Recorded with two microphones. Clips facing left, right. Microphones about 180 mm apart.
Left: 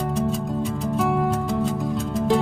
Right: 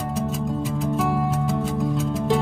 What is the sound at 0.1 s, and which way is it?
Music, 5° right (ahead or behind).